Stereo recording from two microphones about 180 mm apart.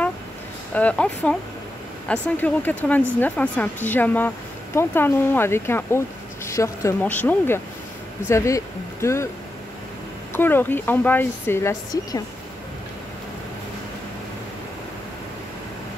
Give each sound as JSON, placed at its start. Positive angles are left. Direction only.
{"t": 0.7, "sound": "speech", "side_deg": 5}
{"t": 10.3, "sound": "speech", "side_deg": 10}